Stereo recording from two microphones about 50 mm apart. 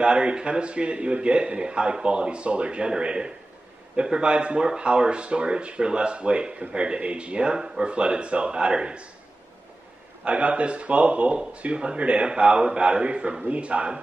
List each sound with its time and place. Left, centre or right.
0.0 s speech: centre
10.2 s speech: right